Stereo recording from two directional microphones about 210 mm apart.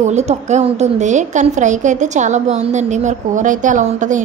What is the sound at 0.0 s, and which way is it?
A woman's voice, 30° right (ahead or behind).